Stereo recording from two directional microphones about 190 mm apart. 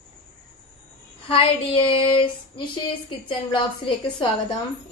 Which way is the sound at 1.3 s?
30° left (ahead or behind).